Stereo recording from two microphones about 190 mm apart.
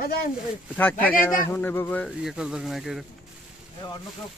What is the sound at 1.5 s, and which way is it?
Speech, 10° left (ahead or behind).